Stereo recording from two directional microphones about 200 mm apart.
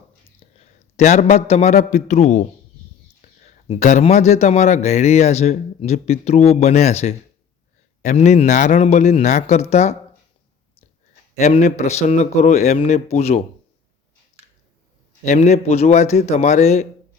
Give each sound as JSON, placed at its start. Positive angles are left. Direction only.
{"t": 0.3, "sound": "a man's voice", "side_deg": 35}
{"t": 11.3, "sound": "a man's voice", "side_deg": 35}
{"t": 15.2, "sound": "a man's voice", "side_deg": 35}